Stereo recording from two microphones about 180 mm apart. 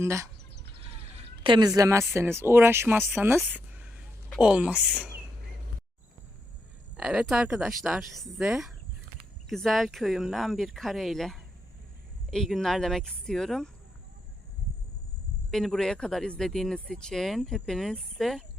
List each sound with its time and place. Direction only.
0.0 s speech: 15° right (ahead or behind)
1.5 s a woman's voice: 25° right (ahead or behind); by 5.0 s 5° right (ahead or behind)
6.9 s speech: 5° right (ahead or behind)
15.4 s speech: centre (ahead or behind)